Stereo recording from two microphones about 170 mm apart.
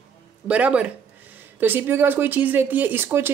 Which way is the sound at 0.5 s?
10° right (ahead or behind).